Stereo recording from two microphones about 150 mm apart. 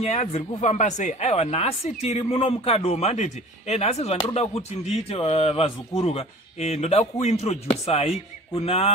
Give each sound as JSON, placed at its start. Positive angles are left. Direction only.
{"t": 0.0, "sound": "speech", "side_deg": 45}